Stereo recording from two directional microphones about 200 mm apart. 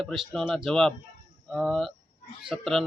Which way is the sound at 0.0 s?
Centre (ahead or behind).